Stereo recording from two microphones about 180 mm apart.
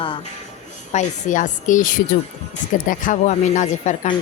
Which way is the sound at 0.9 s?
45° left (ahead or behind).